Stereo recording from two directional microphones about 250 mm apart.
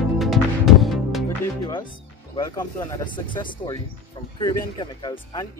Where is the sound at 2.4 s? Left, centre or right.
Centre.